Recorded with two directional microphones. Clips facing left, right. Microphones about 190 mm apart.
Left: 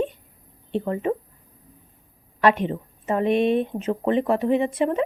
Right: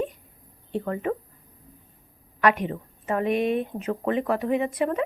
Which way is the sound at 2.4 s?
25° left (ahead or behind).